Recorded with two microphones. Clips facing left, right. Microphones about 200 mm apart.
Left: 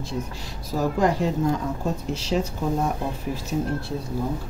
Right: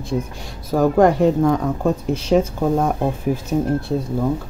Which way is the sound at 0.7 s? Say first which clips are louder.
Right 8 dB; 55° right (ahead or behind).